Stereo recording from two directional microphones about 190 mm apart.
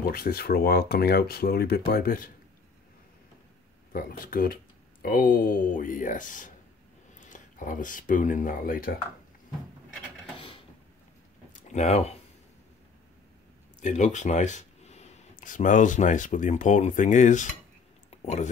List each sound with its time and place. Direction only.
0.1 s speech: 55° left (ahead or behind)
3.9 s speech: 50° left (ahead or behind)
11.5 s speech: 40° left (ahead or behind)
13.7 s speech: 40° left (ahead or behind)
18.1 s a sound: 35° left (ahead or behind)